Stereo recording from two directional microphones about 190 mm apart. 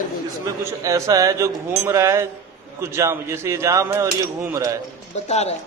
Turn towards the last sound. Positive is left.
turn(degrees=35)  # may be behind; listen again after turning